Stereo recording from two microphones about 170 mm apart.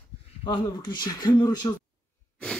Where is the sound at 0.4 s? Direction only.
30° left (ahead or behind).